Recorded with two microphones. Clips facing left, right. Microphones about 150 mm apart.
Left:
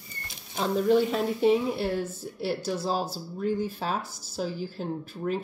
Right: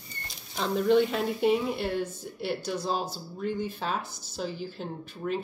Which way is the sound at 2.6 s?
5° left (ahead or behind).